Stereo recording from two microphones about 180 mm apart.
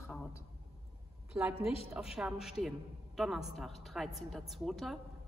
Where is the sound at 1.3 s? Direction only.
10° right (ahead or behind).